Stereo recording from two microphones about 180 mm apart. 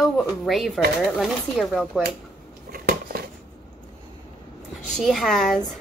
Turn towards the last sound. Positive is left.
turn(degrees=0)  # may be behind; listen again after turning